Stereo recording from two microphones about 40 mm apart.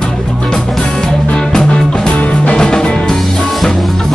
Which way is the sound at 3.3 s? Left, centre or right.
Centre.